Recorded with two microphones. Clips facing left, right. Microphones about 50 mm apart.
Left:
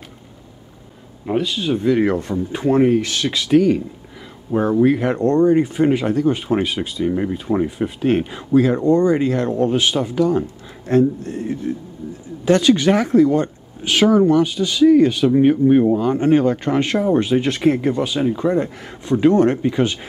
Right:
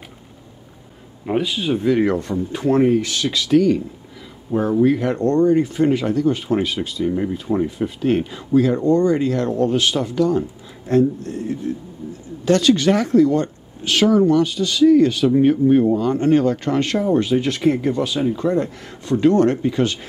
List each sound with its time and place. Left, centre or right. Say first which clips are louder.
1.2 s speech: even; centre